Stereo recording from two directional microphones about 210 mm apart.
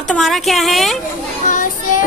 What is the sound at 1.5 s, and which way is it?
Child singing, 40° left (ahead or behind).